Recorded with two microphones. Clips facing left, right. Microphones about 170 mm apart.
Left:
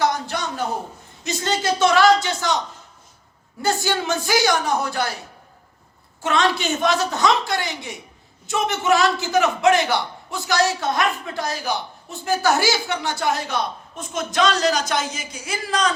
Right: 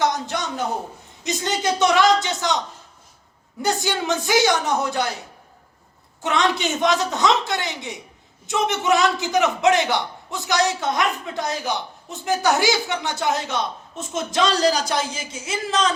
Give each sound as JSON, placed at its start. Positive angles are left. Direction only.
{"t": 0.0, "sound": "a sound", "side_deg": -20}
{"t": 1.2, "sound": "a man's voice", "side_deg": -20}
{"t": 3.6, "sound": "a man's voice", "side_deg": -20}
{"t": 6.2, "sound": "a man's voice", "side_deg": -20}